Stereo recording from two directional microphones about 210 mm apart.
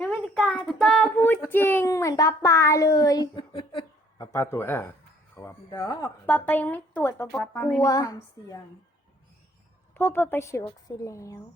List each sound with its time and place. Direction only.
0.0 s child singing: 5° left (ahead or behind)
5.4 s a sound: 15° left (ahead or behind)
6.2 s speech: 5° left (ahead or behind)
9.9 s speech: 10° left (ahead or behind)